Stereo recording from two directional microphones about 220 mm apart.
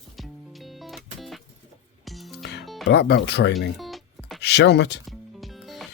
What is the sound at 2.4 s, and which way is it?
Music, 50° left (ahead or behind).